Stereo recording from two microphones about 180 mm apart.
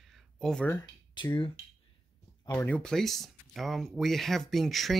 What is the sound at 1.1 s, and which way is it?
Speech, 25° left (ahead or behind).